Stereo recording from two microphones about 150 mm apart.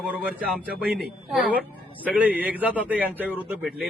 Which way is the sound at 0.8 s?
5° right (ahead or behind).